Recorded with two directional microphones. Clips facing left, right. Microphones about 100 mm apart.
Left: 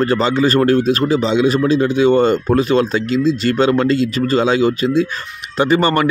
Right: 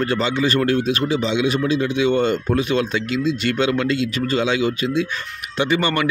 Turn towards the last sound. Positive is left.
turn(degrees=40)  # may be behind; listen again after turning